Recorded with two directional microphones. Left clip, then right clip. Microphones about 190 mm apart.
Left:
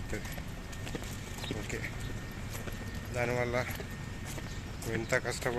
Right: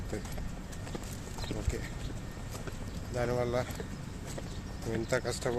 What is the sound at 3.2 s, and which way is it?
Speech, 15° right (ahead or behind).